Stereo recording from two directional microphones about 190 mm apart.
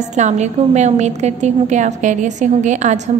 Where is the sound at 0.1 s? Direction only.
35° right (ahead or behind).